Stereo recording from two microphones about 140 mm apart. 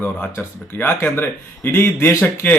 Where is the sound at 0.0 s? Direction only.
15° left (ahead or behind).